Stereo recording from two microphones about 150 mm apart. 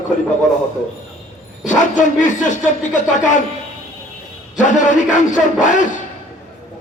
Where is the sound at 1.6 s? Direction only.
55° left (ahead or behind).